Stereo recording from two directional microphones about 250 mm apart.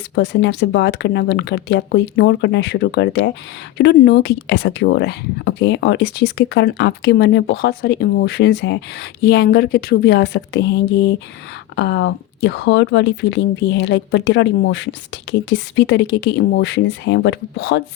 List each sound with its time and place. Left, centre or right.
0.2 s speech: left